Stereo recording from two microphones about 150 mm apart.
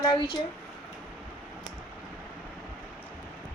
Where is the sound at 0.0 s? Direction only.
30° left (ahead or behind).